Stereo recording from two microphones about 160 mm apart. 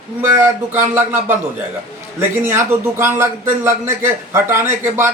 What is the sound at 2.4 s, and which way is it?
Speech, 15° right (ahead or behind).